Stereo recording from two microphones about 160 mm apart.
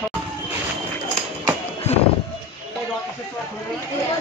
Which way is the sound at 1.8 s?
45° left (ahead or behind).